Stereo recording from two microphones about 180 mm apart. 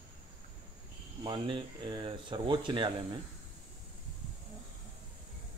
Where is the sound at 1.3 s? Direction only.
25° right (ahead or behind).